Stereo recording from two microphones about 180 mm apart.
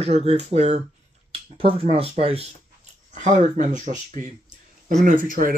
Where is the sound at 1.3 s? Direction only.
35° right (ahead or behind).